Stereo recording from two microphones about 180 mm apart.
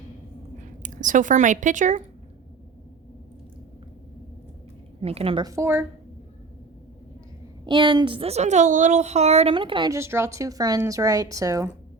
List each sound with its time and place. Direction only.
0.6 s speech: 45° right (ahead or behind)
4.9 s a woman's voice: 35° right (ahead or behind); by 5.8 s 15° right (ahead or behind)
7.7 s a woman's voice: 25° right (ahead or behind)